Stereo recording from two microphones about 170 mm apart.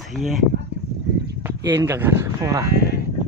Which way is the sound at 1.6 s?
20° right (ahead or behind).